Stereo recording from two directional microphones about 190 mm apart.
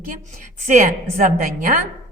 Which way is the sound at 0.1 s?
40° right (ahead or behind).